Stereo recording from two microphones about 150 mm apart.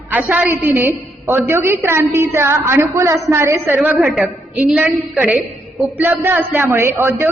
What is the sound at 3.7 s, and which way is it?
A woman's voice, 5° right (ahead or behind).